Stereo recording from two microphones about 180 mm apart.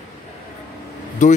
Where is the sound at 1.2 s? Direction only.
40° left (ahead or behind).